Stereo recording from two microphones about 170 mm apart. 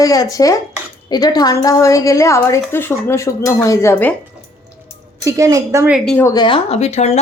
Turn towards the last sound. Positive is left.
turn(degrees=40)  # may be behind; listen again after turning